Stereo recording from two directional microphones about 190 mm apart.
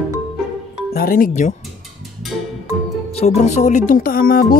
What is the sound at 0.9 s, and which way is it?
Speech, 50° left (ahead or behind).